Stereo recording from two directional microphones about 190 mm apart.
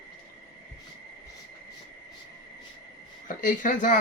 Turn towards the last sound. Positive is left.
turn(degrees=40)  # may be behind; listen again after turning